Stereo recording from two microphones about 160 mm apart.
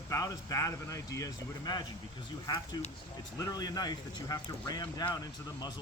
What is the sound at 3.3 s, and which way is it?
Speech, 20° left (ahead or behind).